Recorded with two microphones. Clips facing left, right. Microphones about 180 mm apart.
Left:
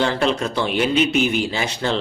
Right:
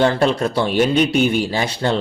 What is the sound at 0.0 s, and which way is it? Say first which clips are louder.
Speech: right 4 dB; 45° right (ahead or behind).